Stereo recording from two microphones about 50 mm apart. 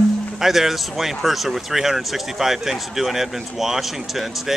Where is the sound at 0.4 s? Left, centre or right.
Centre.